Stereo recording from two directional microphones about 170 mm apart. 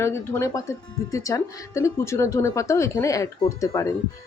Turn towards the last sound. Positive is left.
turn(degrees=20)  # may be behind; listen again after turning